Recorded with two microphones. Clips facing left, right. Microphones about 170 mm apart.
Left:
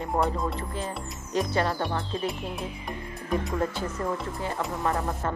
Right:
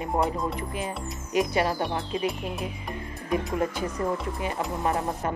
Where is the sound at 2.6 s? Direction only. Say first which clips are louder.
Right 1 dB; centre (ahead or behind).